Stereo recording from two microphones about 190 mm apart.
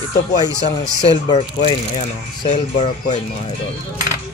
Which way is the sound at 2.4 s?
35° left (ahead or behind).